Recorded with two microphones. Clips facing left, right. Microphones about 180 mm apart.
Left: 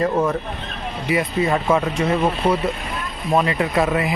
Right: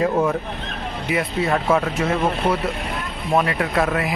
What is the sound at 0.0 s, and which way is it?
Speech, centre (ahead or behind).